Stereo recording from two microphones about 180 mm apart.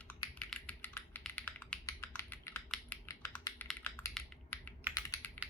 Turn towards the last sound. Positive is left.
turn(degrees=20)  # may be behind; listen again after turning